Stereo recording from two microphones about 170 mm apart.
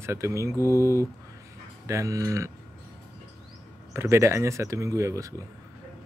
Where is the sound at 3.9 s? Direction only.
15° right (ahead or behind).